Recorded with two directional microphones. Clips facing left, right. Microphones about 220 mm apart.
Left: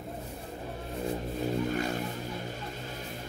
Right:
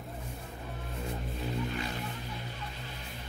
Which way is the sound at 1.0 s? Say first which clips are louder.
Left 6 dB; 45° left (ahead or behind).